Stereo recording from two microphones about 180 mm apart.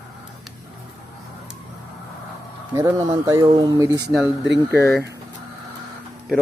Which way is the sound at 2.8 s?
20° right (ahead or behind).